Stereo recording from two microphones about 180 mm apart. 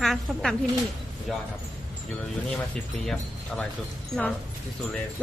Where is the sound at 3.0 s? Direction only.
Centre (ahead or behind).